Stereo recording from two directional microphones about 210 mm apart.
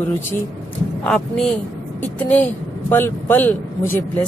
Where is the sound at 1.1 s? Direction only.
5° left (ahead or behind).